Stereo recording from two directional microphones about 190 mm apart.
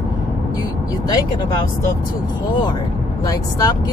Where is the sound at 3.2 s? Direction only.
20° left (ahead or behind).